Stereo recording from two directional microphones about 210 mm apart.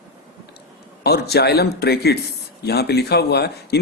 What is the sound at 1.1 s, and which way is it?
Speech, 50° left (ahead or behind).